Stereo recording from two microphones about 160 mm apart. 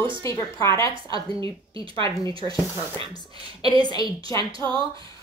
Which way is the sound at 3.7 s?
25° left (ahead or behind).